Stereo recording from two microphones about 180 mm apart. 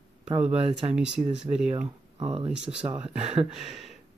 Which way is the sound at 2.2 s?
30° right (ahead or behind).